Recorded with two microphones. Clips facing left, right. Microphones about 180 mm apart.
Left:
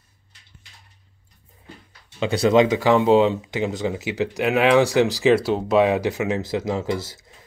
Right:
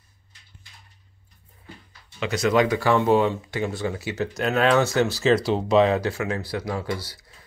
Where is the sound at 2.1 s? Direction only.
30° left (ahead or behind); by 5.4 s 15° left (ahead or behind).